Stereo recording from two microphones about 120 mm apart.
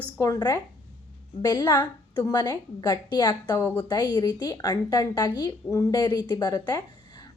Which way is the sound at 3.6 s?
10° left (ahead or behind).